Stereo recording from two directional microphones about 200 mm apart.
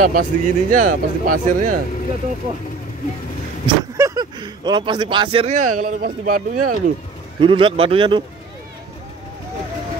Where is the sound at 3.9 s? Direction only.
15° right (ahead or behind); by 6.6 s 45° right (ahead or behind).